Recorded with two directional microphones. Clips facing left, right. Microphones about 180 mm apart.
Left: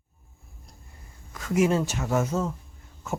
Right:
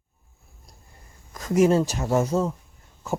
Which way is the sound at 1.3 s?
40° right (ahead or behind).